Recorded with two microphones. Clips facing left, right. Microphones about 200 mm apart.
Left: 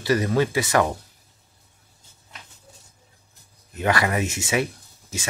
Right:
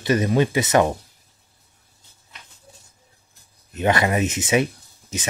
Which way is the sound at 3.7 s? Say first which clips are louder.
Right 3 dB; 20° right (ahead or behind).